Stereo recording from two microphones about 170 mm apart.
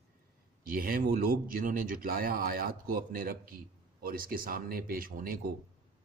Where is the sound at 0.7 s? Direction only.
60° right (ahead or behind).